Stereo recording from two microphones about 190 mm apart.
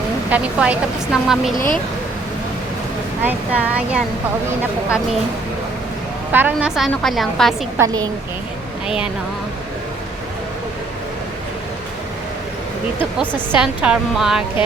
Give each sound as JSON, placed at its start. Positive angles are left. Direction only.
{"t": 0.3, "sound": "speech", "side_deg": -5}
{"t": 1.5, "sound": "speech", "side_deg": 45}
{"t": 3.2, "sound": "speech", "side_deg": -5}
{"t": 6.3, "sound": "a woman's voice", "side_deg": -10}
{"t": 7.8, "sound": "a woman's voice", "side_deg": -20}
{"t": 13.6, "sound": "a woman's voice", "side_deg": -5}